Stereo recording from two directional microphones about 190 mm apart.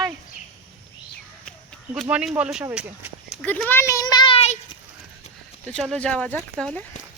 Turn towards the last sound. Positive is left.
turn(degrees=5)  # may be behind; listen again after turning